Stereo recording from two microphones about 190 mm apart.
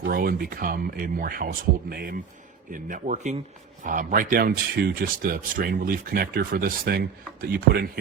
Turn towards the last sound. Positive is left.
turn(degrees=-55)  # may be behind; listen again after turning